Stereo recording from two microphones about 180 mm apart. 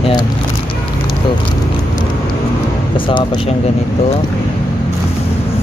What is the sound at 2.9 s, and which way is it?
Speech, 25° left (ahead or behind).